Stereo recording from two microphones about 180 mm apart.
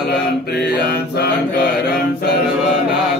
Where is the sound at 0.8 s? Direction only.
60° left (ahead or behind).